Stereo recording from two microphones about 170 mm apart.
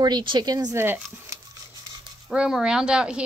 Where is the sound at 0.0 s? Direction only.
25° right (ahead or behind).